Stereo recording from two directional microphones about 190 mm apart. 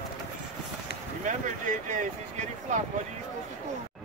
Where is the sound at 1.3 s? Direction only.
40° right (ahead or behind).